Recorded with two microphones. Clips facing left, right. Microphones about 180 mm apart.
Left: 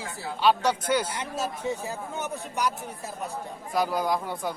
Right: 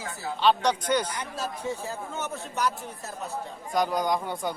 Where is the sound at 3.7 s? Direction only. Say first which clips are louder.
Even; 5° left (ahead or behind).